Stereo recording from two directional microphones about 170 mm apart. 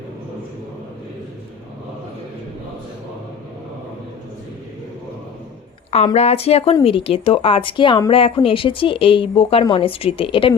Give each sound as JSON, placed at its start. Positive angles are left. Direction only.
{"t": 6.1, "sound": "speech", "side_deg": 40}